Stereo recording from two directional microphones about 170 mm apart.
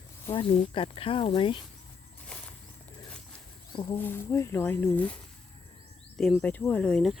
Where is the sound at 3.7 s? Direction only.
25° left (ahead or behind).